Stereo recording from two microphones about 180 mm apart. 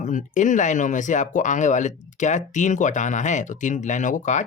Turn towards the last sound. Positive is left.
turn(degrees=45)  # may be behind; listen again after turning